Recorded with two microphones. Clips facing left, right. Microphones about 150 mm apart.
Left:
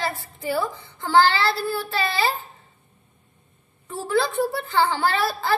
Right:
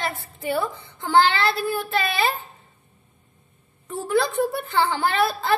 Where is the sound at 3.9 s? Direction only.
20° right (ahead or behind).